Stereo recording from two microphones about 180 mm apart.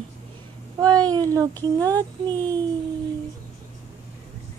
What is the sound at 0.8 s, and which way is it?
A child's voice, 20° right (ahead or behind).